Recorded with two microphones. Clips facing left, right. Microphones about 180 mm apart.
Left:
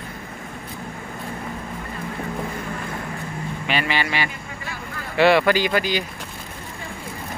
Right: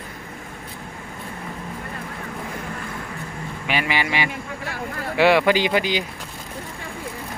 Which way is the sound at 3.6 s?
10° right (ahead or behind).